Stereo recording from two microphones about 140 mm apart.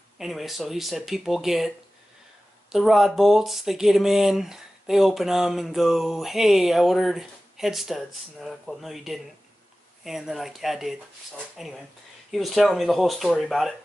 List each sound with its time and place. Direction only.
0.2 s speech: centre (ahead or behind)
2.7 s speech: centre (ahead or behind)